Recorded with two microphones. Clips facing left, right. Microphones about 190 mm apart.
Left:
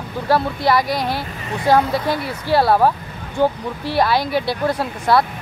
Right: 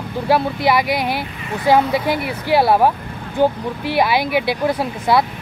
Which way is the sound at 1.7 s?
15° right (ahead or behind).